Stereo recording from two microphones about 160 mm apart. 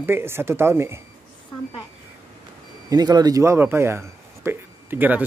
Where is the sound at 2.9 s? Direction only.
25° right (ahead or behind).